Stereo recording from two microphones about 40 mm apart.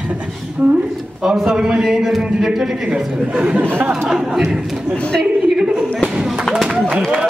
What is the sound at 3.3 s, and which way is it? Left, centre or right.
Speech, right.